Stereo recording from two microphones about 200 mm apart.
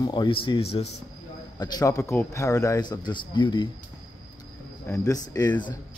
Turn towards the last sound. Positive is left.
turn(degrees=20)  # may be behind; listen again after turning